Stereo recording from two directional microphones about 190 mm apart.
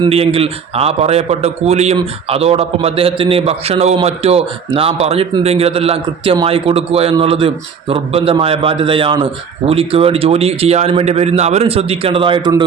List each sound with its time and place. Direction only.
0.0 s a man's voice: 30° right (ahead or behind)